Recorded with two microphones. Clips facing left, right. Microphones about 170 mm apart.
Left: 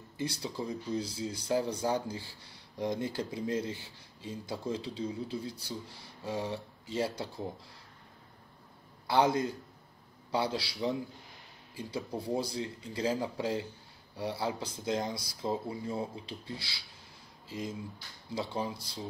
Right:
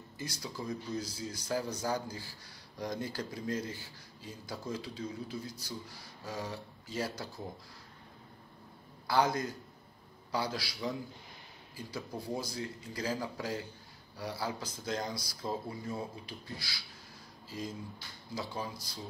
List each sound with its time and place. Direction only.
0.2 s speech: 30° left (ahead or behind)
9.0 s speech: 25° left (ahead or behind)
17.5 s a sound: 25° left (ahead or behind)
18.3 s speech: 25° left (ahead or behind)